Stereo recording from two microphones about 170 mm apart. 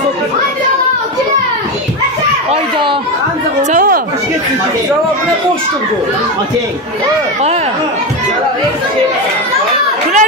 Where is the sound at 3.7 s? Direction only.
55° right (ahead or behind).